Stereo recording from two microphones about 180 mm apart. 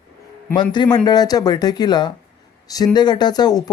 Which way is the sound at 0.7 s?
25° left (ahead or behind).